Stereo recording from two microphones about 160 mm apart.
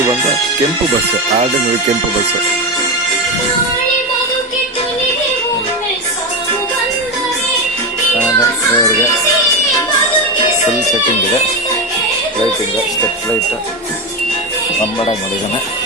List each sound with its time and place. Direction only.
8.4 s music: 20° left (ahead or behind)